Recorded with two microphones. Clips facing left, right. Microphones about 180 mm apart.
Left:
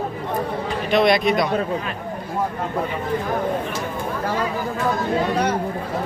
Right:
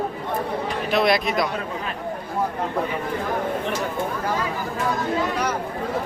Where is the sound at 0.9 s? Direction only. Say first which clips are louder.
Left 4 dB; centre (ahead or behind).